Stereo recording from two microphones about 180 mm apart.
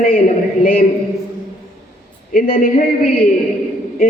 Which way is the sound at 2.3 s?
55° left (ahead or behind).